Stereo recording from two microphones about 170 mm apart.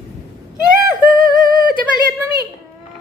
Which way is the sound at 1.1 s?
55° right (ahead or behind).